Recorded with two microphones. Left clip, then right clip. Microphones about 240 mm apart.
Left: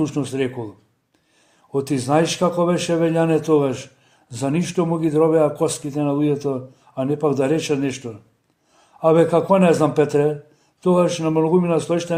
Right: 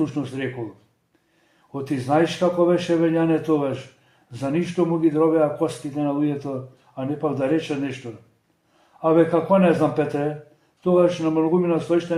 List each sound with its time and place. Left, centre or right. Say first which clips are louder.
0.0 s a man's voice: left 4 dB; left
1.7 s a man's voice: left 3 dB; left
9.0 s a man's voice: left 3 dB; left